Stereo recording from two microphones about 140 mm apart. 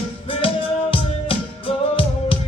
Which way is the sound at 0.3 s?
40° left (ahead or behind).